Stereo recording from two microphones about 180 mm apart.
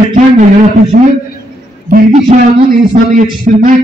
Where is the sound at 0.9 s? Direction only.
50° right (ahead or behind).